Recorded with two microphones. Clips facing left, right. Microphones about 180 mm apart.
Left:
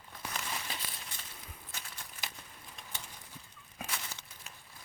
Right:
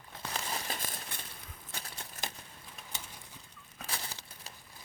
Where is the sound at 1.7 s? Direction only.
35° right (ahead or behind).